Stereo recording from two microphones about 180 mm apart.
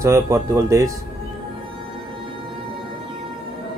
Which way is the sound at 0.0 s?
15° right (ahead or behind).